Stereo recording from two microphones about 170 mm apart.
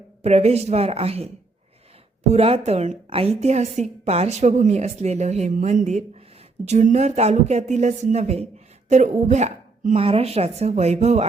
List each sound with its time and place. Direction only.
0.2 s a woman's voice: 40° right (ahead or behind)
2.3 s a woman's voice: 35° right (ahead or behind)